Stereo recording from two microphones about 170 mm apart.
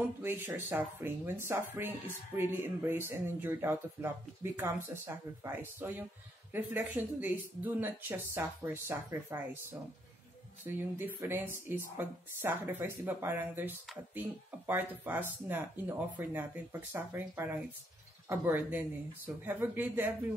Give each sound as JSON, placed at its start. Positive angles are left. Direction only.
{"t": 0.2, "sound": "speech", "side_deg": -15}